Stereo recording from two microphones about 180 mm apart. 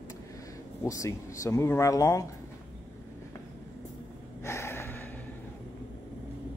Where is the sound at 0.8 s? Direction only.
15° left (ahead or behind).